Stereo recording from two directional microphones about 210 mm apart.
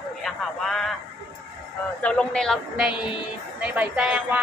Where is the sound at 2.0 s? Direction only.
5° left (ahead or behind).